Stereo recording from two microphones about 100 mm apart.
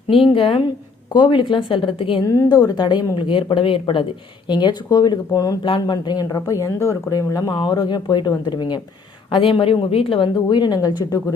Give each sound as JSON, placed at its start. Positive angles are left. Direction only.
{"t": 0.1, "sound": "a woman's voice", "side_deg": 65}
{"t": 2.2, "sound": "a woman's voice", "side_deg": 35}
{"t": 4.4, "sound": "a woman's voice", "side_deg": 50}
{"t": 9.3, "sound": "a woman's voice", "side_deg": 60}